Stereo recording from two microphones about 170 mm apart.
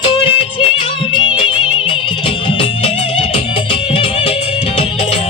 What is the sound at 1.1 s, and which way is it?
Music, 30° left (ahead or behind).